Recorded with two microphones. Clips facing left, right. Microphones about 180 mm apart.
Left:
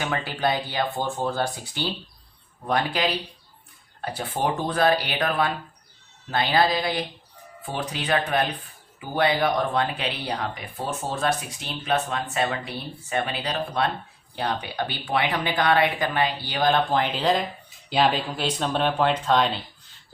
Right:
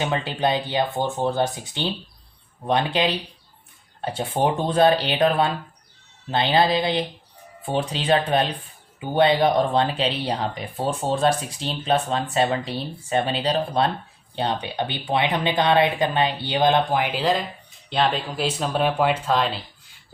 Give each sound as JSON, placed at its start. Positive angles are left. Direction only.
{"t": 0.0, "sound": "speech", "side_deg": -20}